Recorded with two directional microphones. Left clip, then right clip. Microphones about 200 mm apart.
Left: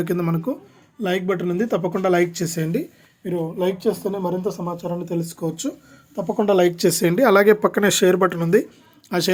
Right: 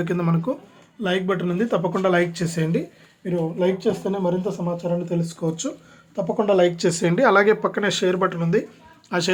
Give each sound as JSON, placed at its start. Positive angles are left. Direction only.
{"t": 0.0, "sound": "a woman's voice", "side_deg": 35}